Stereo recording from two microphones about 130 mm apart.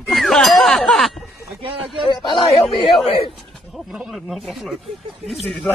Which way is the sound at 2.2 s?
35° left (ahead or behind).